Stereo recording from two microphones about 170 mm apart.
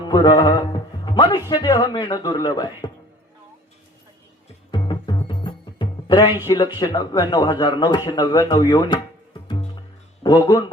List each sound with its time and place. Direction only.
0.0 s speech: 25° left (ahead or behind)
4.7 s music: 25° left (ahead or behind)
6.7 s a man's voice: 25° left (ahead or behind)